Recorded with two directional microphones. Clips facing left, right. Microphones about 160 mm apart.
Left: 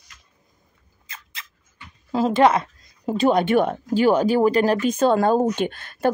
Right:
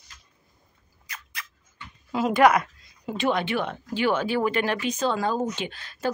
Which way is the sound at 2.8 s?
40° left (ahead or behind).